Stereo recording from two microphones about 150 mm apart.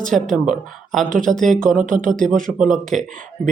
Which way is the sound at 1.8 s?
60° right (ahead or behind).